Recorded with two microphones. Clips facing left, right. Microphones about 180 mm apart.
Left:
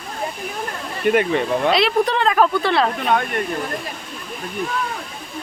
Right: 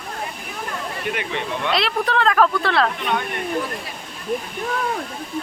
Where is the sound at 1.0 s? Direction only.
45° left (ahead or behind).